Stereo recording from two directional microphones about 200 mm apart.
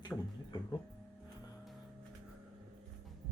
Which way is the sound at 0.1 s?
20° left (ahead or behind).